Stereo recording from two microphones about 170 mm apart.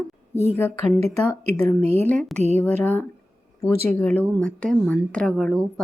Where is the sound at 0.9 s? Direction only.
40° right (ahead or behind).